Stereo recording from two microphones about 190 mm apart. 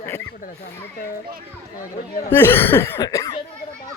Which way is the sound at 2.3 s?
10° left (ahead or behind).